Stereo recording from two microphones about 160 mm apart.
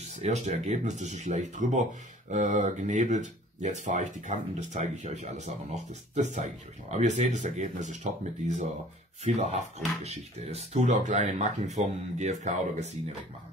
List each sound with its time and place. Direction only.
0.2 s speech: 45° right (ahead or behind)
9.8 s speech: 45° right (ahead or behind)